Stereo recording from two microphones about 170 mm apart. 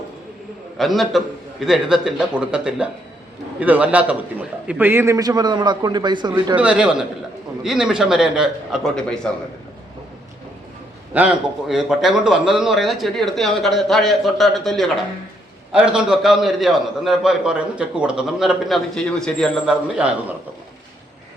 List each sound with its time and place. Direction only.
0.8 s a man's voice: centre (ahead or behind); by 6.6 s 25° right (ahead or behind)
6.6 s a man's voice: 5° right (ahead or behind)
11.7 s a man's voice: centre (ahead or behind)